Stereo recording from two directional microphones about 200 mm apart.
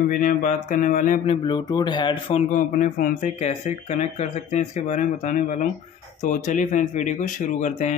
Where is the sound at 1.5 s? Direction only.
20° left (ahead or behind).